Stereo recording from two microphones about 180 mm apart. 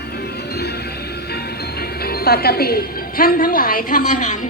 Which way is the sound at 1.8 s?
60° left (ahead or behind).